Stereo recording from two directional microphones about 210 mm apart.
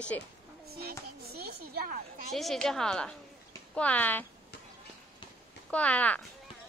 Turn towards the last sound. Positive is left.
turn(degrees=5)  # may be behind; listen again after turning